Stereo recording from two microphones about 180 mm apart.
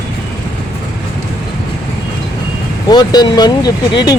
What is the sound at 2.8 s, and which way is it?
Speech, 20° left (ahead or behind).